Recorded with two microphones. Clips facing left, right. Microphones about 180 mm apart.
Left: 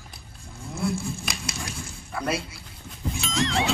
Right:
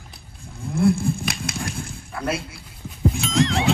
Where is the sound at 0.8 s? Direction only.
55° right (ahead or behind).